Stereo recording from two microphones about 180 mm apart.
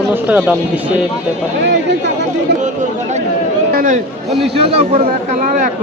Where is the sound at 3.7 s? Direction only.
50° right (ahead or behind).